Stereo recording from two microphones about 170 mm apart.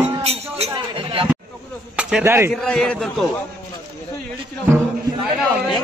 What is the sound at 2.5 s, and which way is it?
Speech, 5° left (ahead or behind).